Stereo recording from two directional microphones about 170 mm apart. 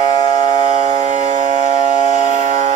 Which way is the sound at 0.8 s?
45° right (ahead or behind).